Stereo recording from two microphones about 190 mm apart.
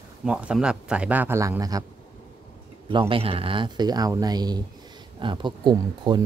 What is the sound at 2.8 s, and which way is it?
A man's voice, 30° right (ahead or behind).